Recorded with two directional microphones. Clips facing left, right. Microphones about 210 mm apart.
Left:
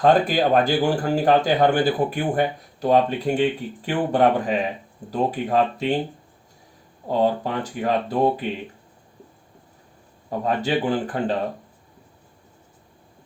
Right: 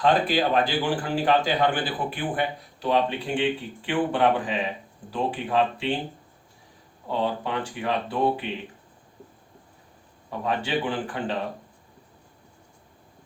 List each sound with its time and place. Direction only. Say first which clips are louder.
0.0 s a man's voice: left 4 dB; 45° left (ahead or behind)
7.1 s speech: left 5 dB; 40° left (ahead or behind)
10.2 s speech: left 5 dB; 40° left (ahead or behind)